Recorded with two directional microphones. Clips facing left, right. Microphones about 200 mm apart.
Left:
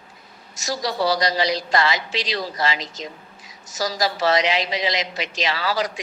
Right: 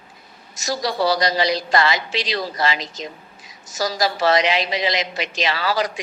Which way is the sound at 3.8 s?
60° right (ahead or behind).